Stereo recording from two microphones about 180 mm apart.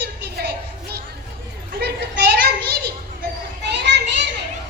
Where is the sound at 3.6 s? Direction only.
70° right (ahead or behind).